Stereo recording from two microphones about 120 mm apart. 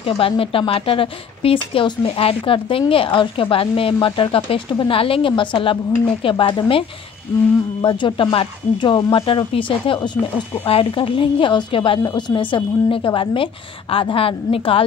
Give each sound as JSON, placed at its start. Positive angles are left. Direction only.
{"t": 0.0, "sound": "speech", "side_deg": 50}
{"t": 7.8, "sound": "speech", "side_deg": 45}